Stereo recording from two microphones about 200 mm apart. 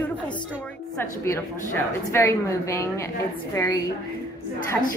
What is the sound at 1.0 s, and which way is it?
A woman's voice, 10° left (ahead or behind).